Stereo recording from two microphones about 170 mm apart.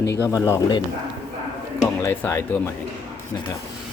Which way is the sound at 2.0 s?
15° left (ahead or behind).